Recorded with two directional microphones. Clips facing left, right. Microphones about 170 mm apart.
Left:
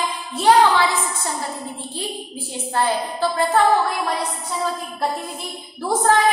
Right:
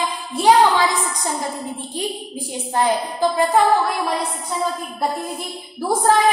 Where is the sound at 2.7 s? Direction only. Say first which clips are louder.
Right 2 dB; 15° right (ahead or behind).